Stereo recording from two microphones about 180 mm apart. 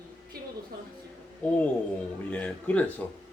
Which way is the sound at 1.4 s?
5° left (ahead or behind).